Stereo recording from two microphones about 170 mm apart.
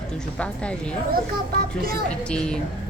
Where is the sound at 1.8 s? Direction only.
60° right (ahead or behind).